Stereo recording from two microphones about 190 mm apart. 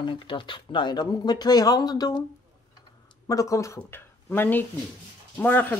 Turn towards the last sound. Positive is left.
turn(degrees=10)  # may be behind; listen again after turning